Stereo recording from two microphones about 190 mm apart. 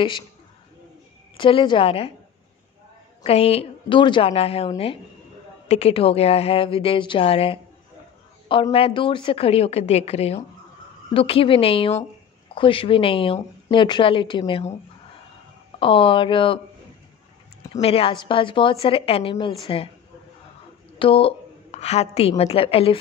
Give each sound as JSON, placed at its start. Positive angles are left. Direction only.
{"t": 1.3, "sound": "a woman's voice", "side_deg": 25}
{"t": 3.3, "sound": "a woman's voice", "side_deg": 30}
{"t": 15.8, "sound": "a woman's voice", "side_deg": 25}
{"t": 17.7, "sound": "a woman's voice", "side_deg": 30}
{"t": 21.0, "sound": "a woman's voice", "side_deg": 30}